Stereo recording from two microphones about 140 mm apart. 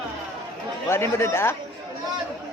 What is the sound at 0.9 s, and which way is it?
Speech, 20° left (ahead or behind).